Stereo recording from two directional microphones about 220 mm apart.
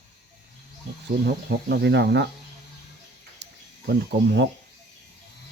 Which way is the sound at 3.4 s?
50° right (ahead or behind).